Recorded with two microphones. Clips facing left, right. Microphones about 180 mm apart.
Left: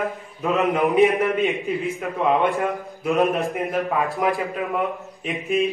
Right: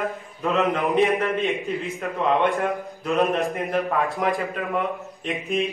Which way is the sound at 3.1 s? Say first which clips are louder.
Left 1 dB; centre (ahead or behind).